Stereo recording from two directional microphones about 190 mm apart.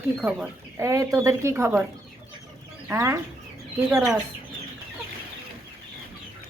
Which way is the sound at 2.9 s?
15° right (ahead or behind).